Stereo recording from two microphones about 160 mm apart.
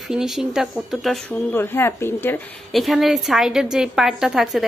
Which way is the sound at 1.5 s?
15° left (ahead or behind).